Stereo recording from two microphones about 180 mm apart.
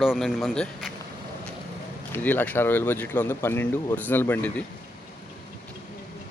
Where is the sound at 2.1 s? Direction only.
10° left (ahead or behind).